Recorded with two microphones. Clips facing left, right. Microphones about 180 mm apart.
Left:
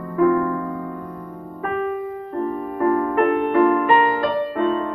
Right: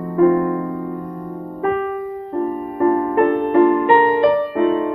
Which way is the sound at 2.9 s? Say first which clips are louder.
Right 2 dB; 30° right (ahead or behind).